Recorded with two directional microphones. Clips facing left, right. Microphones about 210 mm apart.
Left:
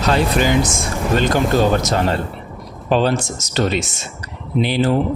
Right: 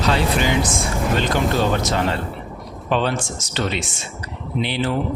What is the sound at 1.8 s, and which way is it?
Speech, 40° left (ahead or behind).